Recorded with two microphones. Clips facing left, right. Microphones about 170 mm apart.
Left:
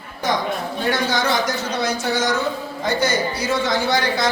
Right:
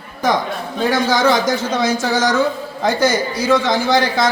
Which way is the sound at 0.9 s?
90° right.